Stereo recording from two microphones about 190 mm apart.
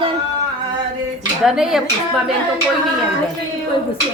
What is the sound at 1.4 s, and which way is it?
Speech, centre (ahead or behind).